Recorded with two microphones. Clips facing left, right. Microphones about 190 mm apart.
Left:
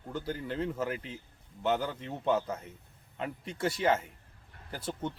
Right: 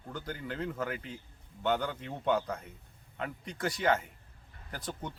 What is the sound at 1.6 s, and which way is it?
Speech, 5° left (ahead or behind).